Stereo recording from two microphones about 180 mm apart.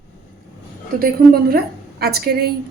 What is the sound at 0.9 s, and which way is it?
A woman's voice, 55° right (ahead or behind).